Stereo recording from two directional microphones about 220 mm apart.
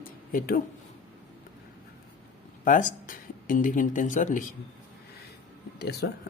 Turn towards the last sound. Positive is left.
turn(degrees=50)  # may be behind; listen again after turning